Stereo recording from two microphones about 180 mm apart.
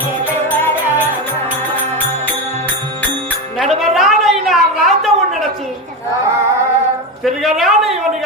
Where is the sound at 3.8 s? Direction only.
Centre (ahead or behind).